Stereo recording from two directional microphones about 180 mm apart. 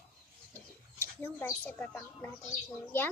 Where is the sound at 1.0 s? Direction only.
10° left (ahead or behind).